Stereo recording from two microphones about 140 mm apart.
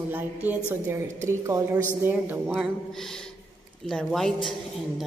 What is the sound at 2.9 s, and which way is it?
Speech, 5° left (ahead or behind).